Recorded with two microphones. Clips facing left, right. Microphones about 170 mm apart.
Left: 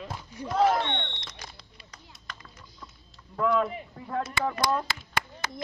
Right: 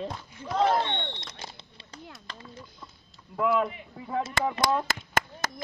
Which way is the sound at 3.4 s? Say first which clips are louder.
Even; 5° right (ahead or behind).